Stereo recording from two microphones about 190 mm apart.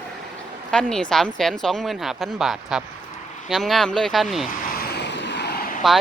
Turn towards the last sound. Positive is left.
turn(degrees=50)  # may be behind; listen again after turning